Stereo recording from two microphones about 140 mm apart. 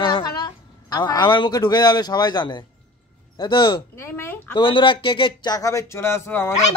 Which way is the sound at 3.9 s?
15° left (ahead or behind).